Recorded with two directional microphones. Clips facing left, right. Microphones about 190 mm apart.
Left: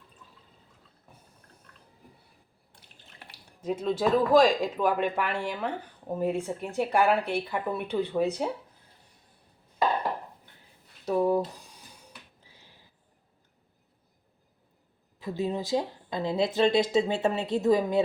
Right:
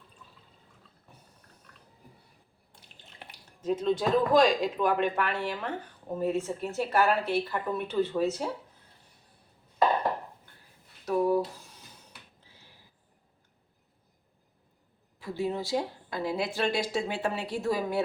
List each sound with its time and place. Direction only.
3.6 s a woman's voice: 10° left (ahead or behind)
11.0 s a sound: 20° left (ahead or behind)
15.2 s speech: 20° left (ahead or behind)